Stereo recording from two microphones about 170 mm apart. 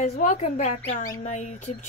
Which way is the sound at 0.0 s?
45° left (ahead or behind).